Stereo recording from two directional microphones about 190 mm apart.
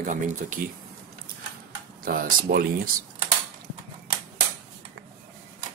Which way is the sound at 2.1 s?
50° right (ahead or behind).